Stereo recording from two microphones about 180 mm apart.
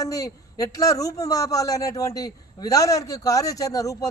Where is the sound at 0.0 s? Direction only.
20° left (ahead or behind).